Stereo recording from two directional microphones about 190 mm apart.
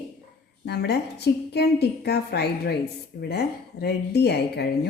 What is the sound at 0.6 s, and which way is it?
A woman's voice, 60° left (ahead or behind).